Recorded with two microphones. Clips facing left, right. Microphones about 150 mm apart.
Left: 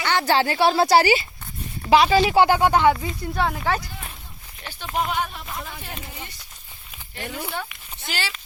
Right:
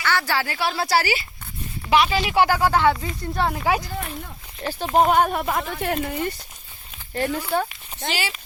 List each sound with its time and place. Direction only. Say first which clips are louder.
0.0 s speech: left 3 dB; 20° left (ahead or behind)
1.9 s speech: left 4 dB; 35° left (ahead or behind); by 3.2 s 20° left (ahead or behind)
3.3 s speech: right 2 dB; centre (ahead or behind)
4.8 s speech: right 8 dB; 45° right (ahead or behind)